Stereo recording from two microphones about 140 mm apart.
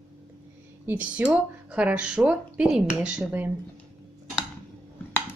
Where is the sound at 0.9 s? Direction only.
10° right (ahead or behind).